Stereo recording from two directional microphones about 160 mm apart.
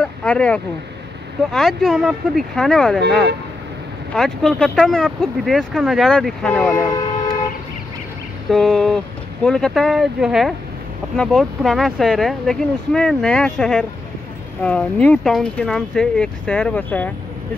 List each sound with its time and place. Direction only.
0.0 s a sound: 5° left (ahead or behind)
1.5 s speech: centre (ahead or behind)
4.1 s speech: 5° left (ahead or behind)
8.5 s speech: centre (ahead or behind)